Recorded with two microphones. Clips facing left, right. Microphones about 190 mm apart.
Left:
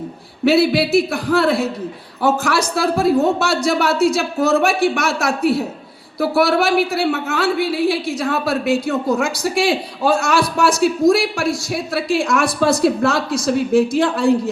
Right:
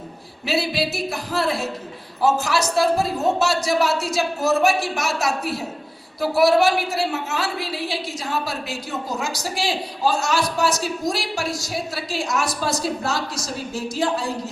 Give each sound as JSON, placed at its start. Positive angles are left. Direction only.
{"t": 0.4, "sound": "a woman's voice", "side_deg": 65}